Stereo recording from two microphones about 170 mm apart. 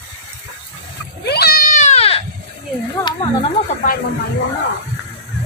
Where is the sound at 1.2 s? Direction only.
70° left (ahead or behind); by 2.2 s 35° left (ahead or behind).